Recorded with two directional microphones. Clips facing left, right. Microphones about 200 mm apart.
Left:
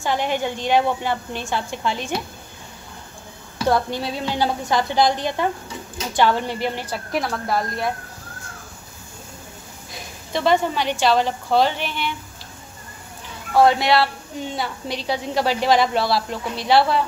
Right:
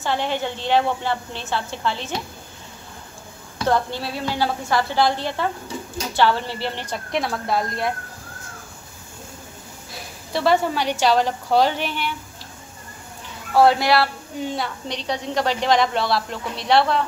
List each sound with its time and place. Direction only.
0.0 s a woman's voice: 15° left (ahead or behind)
3.6 s a woman's voice: 15° left (ahead or behind)
10.3 s a woman's voice: 5° right (ahead or behind)
13.5 s a woman's voice: 5° right (ahead or behind)